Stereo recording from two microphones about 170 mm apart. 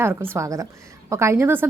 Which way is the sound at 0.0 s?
15° right (ahead or behind).